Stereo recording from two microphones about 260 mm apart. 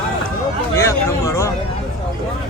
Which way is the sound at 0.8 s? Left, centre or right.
Centre.